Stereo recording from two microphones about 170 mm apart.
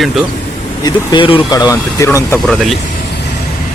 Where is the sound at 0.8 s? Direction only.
30° left (ahead or behind); by 2.6 s 10° left (ahead or behind).